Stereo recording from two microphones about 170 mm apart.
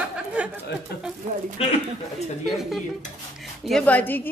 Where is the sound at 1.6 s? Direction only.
40° left (ahead or behind).